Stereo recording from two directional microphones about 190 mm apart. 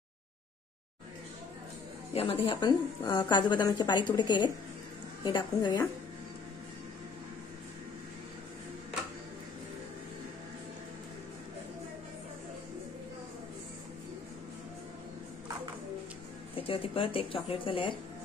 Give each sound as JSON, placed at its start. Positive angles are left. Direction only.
{"t": 2.1, "sound": "a woman's voice", "side_deg": 30}
{"t": 16.5, "sound": "a woman's voice", "side_deg": 30}